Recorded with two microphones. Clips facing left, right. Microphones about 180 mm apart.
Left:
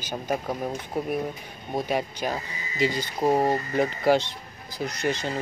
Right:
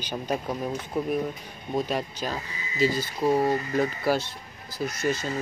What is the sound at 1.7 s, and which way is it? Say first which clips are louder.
Speech: left 1 dB; 10° left (ahead or behind).